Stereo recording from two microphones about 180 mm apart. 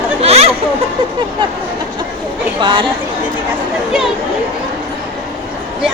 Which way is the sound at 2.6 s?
25° right (ahead or behind).